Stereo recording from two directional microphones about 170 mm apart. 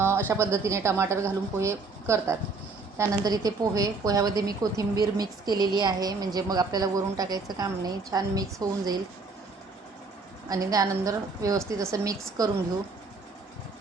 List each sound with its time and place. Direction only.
0.3 s a woman's voice: 15° right (ahead or behind)
10.5 s a woman's voice: 20° right (ahead or behind)